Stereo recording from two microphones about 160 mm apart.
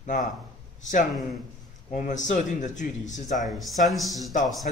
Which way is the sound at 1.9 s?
50° left (ahead or behind).